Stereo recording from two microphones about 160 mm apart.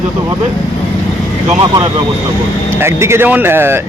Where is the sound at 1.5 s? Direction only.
25° right (ahead or behind).